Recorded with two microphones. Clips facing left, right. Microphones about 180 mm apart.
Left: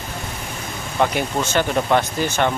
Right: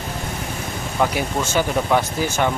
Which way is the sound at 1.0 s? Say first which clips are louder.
Left 1 dB; 5° right (ahead or behind).